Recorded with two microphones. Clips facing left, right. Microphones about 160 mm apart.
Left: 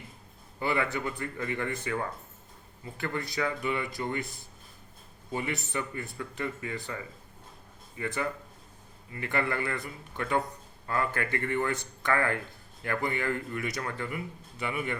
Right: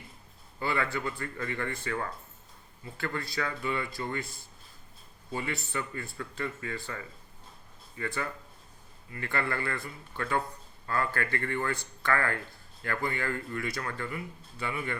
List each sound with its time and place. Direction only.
0.6 s speech: 20° left (ahead or behind)